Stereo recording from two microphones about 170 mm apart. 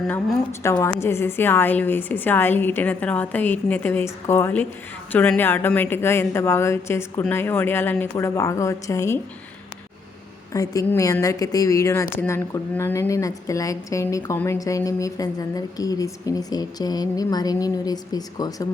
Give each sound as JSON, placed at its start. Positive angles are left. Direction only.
{"t": 0.6, "sound": "a woman's voice", "side_deg": 15}
{"t": 10.5, "sound": "a woman's voice", "side_deg": 20}